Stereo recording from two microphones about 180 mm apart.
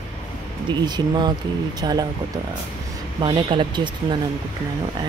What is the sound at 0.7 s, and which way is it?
Speech, 25° right (ahead or behind).